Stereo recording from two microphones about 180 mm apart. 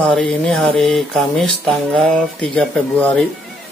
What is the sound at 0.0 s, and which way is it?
Speech, 5° left (ahead or behind).